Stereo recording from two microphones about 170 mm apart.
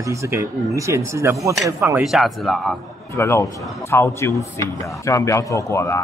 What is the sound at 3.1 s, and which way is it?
Speech, 15° left (ahead or behind).